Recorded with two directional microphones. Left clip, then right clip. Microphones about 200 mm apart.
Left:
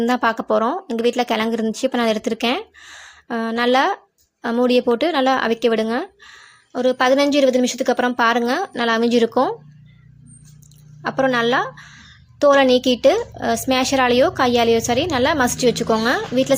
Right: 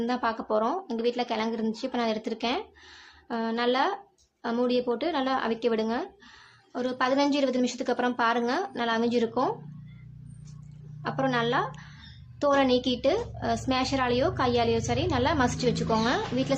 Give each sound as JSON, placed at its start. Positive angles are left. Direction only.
{"t": 0.0, "sound": "speech", "side_deg": 35}
{"t": 11.0, "sound": "a woman's voice", "side_deg": 30}